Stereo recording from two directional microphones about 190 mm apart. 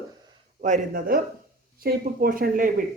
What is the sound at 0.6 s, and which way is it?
A woman's voice, 45° right (ahead or behind).